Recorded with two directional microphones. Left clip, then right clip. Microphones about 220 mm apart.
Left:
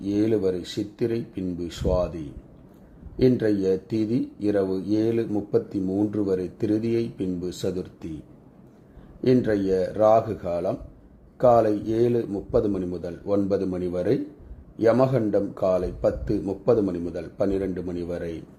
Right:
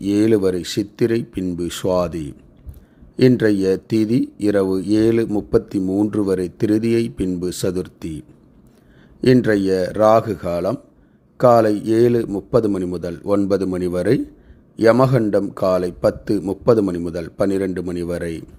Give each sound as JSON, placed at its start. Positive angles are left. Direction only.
{"t": 0.0, "sound": "speech", "side_deg": -25}
{"t": 9.2, "sound": "speech", "side_deg": -25}